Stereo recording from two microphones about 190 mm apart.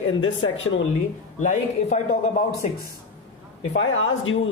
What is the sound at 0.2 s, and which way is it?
Speech, 90° left.